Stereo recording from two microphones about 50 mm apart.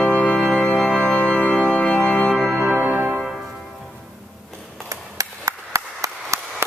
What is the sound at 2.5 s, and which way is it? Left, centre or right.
Music, centre.